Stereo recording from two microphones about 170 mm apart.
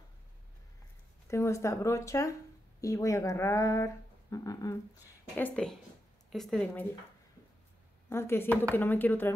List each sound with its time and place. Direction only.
1.2 s speech: 15° left (ahead or behind)
5.3 s speech: 5° left (ahead or behind)
8.1 s speech: 15° left (ahead or behind)